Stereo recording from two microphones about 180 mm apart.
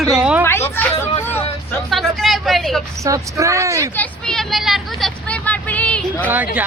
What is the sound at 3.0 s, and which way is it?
Speech, 15° right (ahead or behind).